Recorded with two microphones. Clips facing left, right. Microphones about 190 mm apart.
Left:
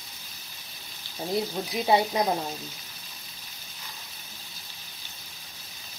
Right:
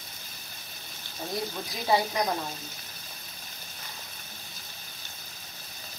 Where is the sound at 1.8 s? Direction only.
25° left (ahead or behind).